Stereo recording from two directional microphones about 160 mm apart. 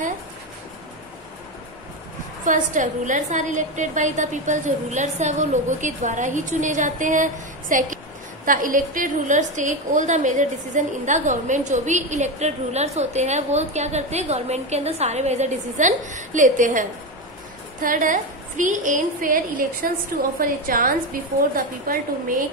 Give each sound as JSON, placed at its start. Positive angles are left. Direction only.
{"t": 2.4, "sound": "a woman's voice", "side_deg": -55}
{"t": 17.8, "sound": "a woman's voice", "side_deg": -55}